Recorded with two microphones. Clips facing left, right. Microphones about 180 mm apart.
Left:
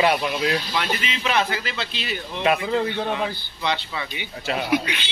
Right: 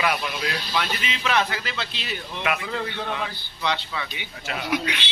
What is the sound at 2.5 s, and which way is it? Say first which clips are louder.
Speech: left 7 dB; 30° left (ahead or behind).